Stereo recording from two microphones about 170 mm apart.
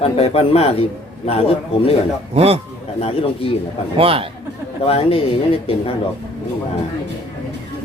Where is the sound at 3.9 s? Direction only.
35° right (ahead or behind).